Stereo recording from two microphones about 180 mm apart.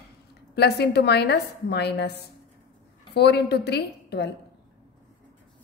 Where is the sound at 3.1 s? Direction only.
65° left (ahead or behind).